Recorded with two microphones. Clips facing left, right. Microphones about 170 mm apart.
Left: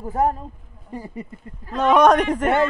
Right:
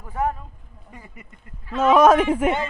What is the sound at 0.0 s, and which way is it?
Speech, 40° left (ahead or behind).